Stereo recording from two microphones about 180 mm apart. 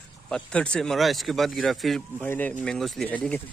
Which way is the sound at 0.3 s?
5° left (ahead or behind).